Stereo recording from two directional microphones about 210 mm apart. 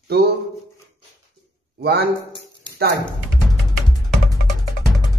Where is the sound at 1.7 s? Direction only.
50° right (ahead or behind).